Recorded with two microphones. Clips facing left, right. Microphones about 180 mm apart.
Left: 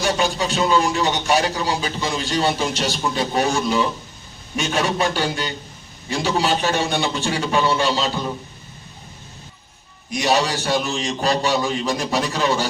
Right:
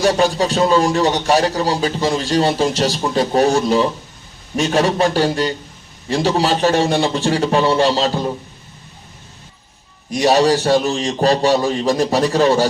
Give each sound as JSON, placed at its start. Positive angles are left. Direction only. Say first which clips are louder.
{"t": 0.0, "sound": "speech", "louder": "right 6 dB", "side_deg": -35}
{"t": 10.1, "sound": "speech", "louder": "right 7 dB", "side_deg": -35}